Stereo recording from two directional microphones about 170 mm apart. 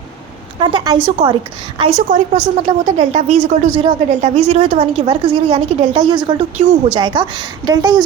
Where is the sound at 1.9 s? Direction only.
50° right (ahead or behind); by 6.3 s 25° right (ahead or behind).